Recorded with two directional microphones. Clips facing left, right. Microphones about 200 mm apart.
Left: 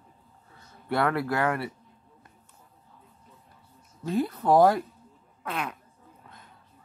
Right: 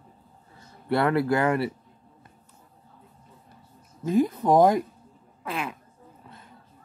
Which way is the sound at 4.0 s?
15° right (ahead or behind).